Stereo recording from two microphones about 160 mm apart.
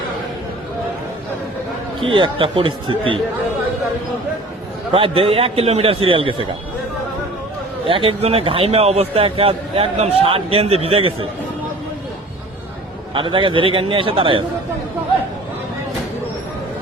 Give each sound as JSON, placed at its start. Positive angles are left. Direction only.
{"t": 2.0, "sound": "a man's voice", "side_deg": -30}
{"t": 4.9, "sound": "a man's voice", "side_deg": -35}
{"t": 7.9, "sound": "a man's voice", "side_deg": -35}
{"t": 13.1, "sound": "a man's voice", "side_deg": -30}